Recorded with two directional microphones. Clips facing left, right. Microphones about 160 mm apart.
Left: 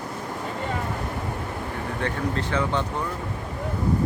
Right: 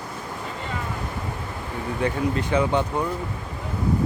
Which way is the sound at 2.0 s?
15° right (ahead or behind).